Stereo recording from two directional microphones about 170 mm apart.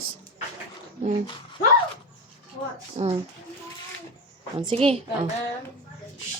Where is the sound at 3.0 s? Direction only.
40° right (ahead or behind).